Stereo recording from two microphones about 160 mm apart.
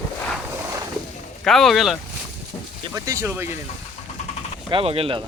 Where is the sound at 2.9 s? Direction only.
20° right (ahead or behind).